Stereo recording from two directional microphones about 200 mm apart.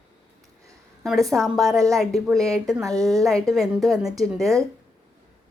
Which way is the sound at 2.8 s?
15° right (ahead or behind).